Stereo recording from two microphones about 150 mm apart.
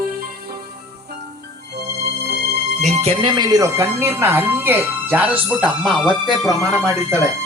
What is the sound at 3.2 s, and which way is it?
Speech, 30° right (ahead or behind).